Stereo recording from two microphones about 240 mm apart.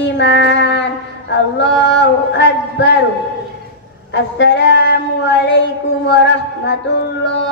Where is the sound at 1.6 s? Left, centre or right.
Left.